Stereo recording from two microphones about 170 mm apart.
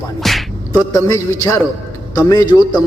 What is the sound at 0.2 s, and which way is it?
Music, centre (ahead or behind).